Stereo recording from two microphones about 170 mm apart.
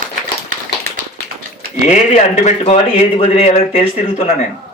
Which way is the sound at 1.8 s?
45° left (ahead or behind).